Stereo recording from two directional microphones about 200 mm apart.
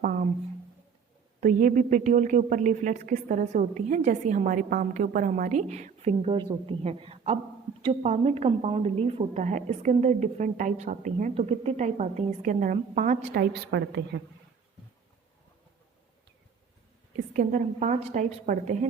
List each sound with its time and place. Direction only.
1.4 s a woman's voice: 40° right (ahead or behind)
13.5 s a woman's voice: 60° right (ahead or behind)
17.3 s a woman's voice: 40° right (ahead or behind)